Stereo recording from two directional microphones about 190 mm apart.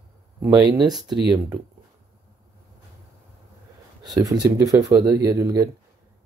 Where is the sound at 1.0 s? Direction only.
20° right (ahead or behind).